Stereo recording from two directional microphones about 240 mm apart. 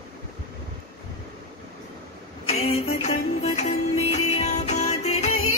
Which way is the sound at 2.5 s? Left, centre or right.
Left.